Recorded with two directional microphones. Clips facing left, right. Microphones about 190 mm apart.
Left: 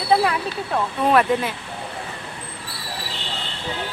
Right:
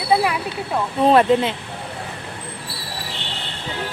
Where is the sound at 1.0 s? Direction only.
25° right (ahead or behind).